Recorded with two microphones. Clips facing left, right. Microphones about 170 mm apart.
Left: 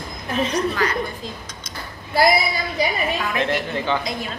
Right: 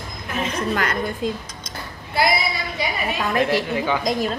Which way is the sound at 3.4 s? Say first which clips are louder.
Right 6 dB; 10° right (ahead or behind).